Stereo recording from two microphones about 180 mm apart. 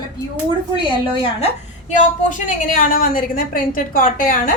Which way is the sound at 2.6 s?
50° left (ahead or behind).